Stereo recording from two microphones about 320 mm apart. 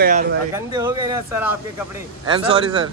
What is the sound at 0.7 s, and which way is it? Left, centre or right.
Speech, centre.